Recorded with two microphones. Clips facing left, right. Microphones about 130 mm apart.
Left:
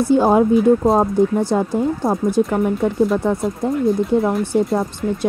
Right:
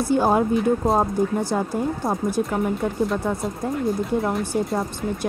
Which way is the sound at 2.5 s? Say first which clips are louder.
Left 5 dB; centre (ahead or behind).